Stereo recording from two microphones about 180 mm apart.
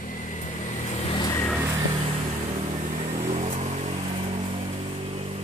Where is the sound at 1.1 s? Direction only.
25° left (ahead or behind).